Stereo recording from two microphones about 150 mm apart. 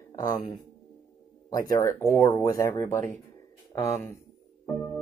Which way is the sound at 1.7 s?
20° left (ahead or behind).